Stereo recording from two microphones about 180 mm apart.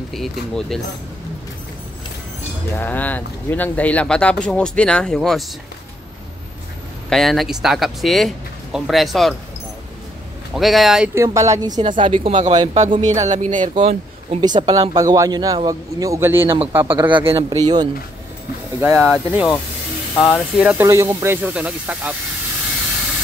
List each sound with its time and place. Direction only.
0.1 s speech: centre (ahead or behind)
2.7 s speech: 10° left (ahead or behind)
7.1 s speech: centre (ahead or behind)
10.5 s speech: centre (ahead or behind)
11.1 s speech: 15° right (ahead or behind)
13.0 s speech: 40° right (ahead or behind)
14.4 s speech: 25° right (ahead or behind)
17.4 s speech: 20° right (ahead or behind)
18.8 s speech: 10° right (ahead or behind)
20.8 s speech: 15° right (ahead or behind)